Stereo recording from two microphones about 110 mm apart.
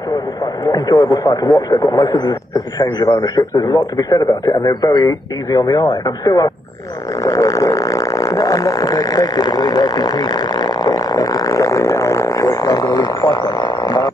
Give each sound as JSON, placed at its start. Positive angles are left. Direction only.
{"t": 0.7, "sound": "a man's voice", "side_deg": 35}